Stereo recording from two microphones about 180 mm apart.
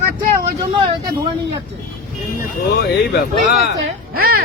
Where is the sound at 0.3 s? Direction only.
25° right (ahead or behind).